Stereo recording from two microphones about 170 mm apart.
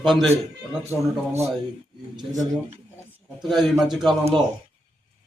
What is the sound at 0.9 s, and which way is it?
A man's voice, 15° right (ahead or behind).